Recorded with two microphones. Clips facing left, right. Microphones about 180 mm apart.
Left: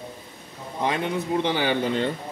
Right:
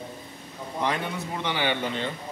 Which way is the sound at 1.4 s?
35° left (ahead or behind).